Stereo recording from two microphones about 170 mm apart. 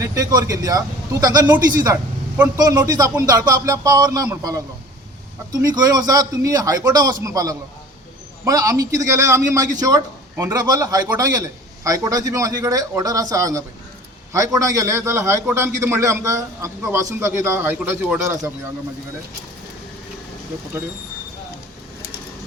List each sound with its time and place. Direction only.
0.0 s a man's voice: 20° right (ahead or behind)